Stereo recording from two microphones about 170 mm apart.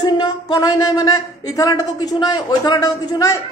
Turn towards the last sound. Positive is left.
turn(degrees=20)  # may be behind; listen again after turning